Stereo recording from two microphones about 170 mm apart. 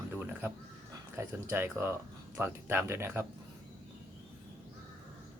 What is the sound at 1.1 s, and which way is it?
Speech, 15° right (ahead or behind).